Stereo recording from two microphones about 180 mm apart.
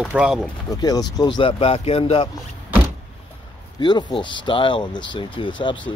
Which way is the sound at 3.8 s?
25° left (ahead or behind).